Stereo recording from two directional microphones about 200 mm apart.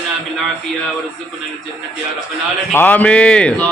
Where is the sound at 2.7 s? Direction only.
10° left (ahead or behind).